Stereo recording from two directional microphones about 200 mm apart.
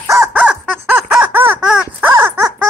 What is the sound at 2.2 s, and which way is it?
Dog, 15° right (ahead or behind).